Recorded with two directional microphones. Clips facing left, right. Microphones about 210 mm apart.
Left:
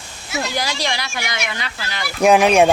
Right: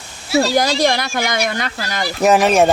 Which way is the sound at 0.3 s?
35° right (ahead or behind).